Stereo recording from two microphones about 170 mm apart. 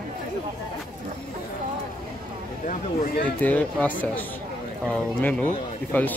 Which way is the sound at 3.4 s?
10° left (ahead or behind).